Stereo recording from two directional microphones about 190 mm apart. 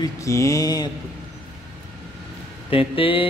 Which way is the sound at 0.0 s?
15° left (ahead or behind).